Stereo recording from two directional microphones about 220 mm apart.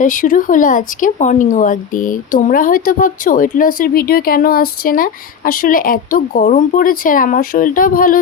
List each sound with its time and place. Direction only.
0.0 s speech: 35° left (ahead or behind)